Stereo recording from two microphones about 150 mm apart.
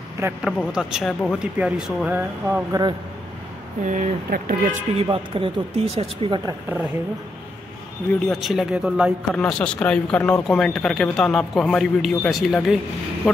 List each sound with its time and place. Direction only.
0.4 s speech: centre (ahead or behind)
2.4 s speech: 15° right (ahead or behind)
3.8 s speech: 55° right (ahead or behind)
5.0 s speech: 35° right (ahead or behind)
8.2 s speech: centre (ahead or behind)
9.3 s speech: 5° left (ahead or behind)